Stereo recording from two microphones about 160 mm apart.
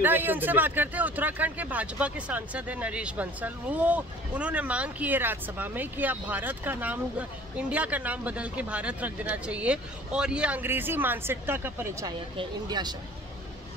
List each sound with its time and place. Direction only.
0.0 s speech: 10° right (ahead or behind)